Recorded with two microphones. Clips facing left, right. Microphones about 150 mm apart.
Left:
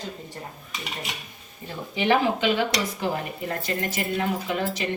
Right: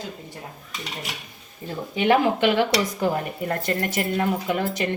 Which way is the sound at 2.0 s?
55° right (ahead or behind).